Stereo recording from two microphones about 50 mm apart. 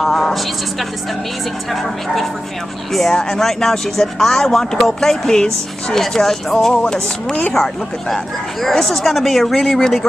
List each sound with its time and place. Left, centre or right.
0.0 s speech: centre
2.9 s speech: centre